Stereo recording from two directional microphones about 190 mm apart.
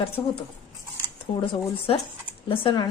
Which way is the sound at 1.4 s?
30° left (ahead or behind).